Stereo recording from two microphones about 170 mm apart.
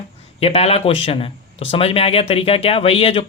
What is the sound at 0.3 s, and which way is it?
Speech, 35° left (ahead or behind).